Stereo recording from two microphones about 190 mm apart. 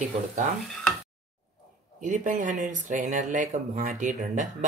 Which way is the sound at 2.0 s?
40° right (ahead or behind).